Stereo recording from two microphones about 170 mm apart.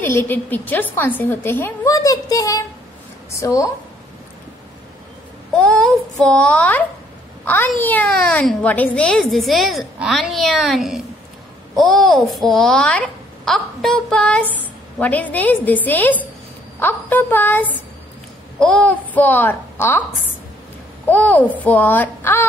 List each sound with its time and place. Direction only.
0.0 s a woman's voice: 15° left (ahead or behind)
5.6 s a sound: 5° left (ahead or behind)
7.4 s a woman's voice: 10° left (ahead or behind)
21.1 s a woman's voice: 10° left (ahead or behind)